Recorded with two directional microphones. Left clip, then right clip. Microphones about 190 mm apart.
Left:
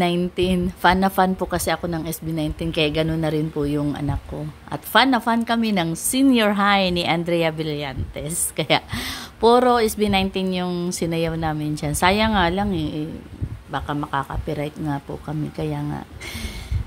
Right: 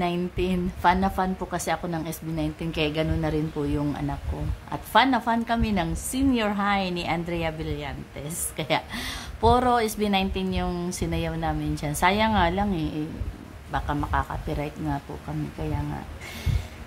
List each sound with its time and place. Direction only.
0.0 s a woman's voice: 30° left (ahead or behind)